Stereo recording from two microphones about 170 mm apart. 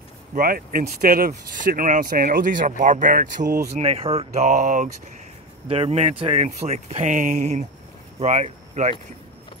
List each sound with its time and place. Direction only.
0.3 s speech: 55° right (ahead or behind)
3.7 s speech: 35° right (ahead or behind)
5.7 s speech: 35° right (ahead or behind)